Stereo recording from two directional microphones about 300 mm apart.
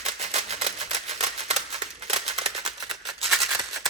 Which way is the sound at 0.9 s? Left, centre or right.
Right.